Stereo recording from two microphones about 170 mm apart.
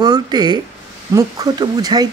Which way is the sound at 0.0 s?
25° right (ahead or behind).